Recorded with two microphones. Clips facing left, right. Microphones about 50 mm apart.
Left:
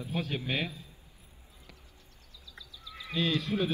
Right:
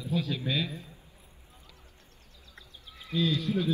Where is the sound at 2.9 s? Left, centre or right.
Left.